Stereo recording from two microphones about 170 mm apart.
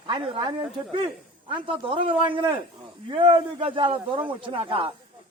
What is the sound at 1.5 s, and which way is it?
A man's voice, 30° right (ahead or behind).